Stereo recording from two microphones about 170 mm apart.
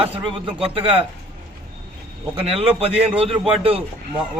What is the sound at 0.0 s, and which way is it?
Speech, 35° right (ahead or behind).